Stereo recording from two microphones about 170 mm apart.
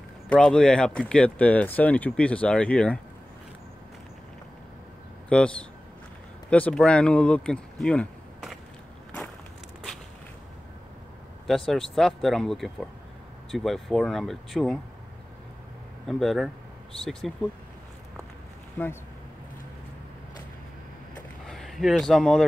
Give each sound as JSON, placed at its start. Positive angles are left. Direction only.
{"t": 0.3, "sound": "speech", "side_deg": 5}
{"t": 5.3, "sound": "speech", "side_deg": 5}
{"t": 11.4, "sound": "speech", "side_deg": 0}
{"t": 16.1, "sound": "speech", "side_deg": 0}
{"t": 18.8, "sound": "speech", "side_deg": 10}
{"t": 21.5, "sound": "a man's voice", "side_deg": 0}